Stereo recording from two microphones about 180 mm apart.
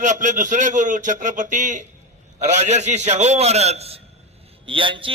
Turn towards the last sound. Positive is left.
turn(degrees=-30)  # may be behind; listen again after turning